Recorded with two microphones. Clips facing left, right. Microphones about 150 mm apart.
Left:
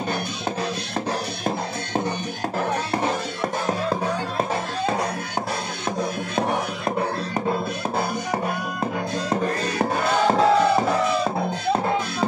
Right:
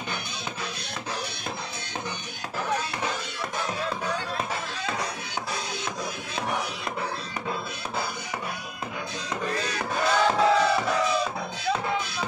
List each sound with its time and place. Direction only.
2.9 s music: 45° left (ahead or behind)
9.3 s music: 50° left (ahead or behind)